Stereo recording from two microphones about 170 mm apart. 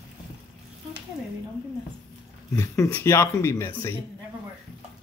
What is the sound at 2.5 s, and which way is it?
Speech, 15° left (ahead or behind).